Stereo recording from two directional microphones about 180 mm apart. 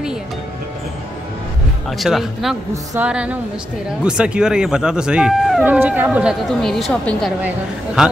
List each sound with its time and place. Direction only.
1.9 s speech: centre (ahead or behind)
2.7 s music: 15° right (ahead or behind)
3.1 s music: 5° right (ahead or behind)
4.0 s speech: 5° right (ahead or behind)